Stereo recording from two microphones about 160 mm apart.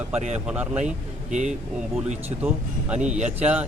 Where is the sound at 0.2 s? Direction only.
45° right (ahead or behind).